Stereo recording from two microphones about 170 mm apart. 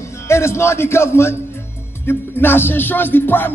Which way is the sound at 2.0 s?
15° left (ahead or behind).